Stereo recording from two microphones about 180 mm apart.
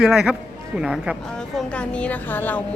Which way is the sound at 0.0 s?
5° right (ahead or behind).